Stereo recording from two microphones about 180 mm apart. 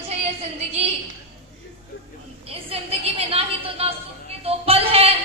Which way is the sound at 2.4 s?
35° right (ahead or behind).